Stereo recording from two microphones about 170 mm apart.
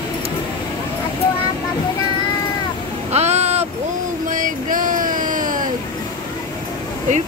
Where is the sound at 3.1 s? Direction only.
40° right (ahead or behind).